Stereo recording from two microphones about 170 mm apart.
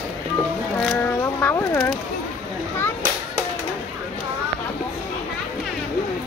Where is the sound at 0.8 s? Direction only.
5° left (ahead or behind).